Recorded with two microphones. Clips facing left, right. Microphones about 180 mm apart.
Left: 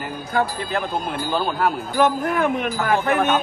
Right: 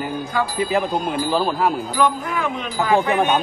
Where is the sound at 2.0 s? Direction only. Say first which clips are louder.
Left 5 dB; 55° left (ahead or behind).